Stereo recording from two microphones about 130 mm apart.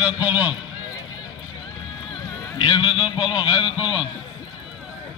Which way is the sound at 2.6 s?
40° left (ahead or behind).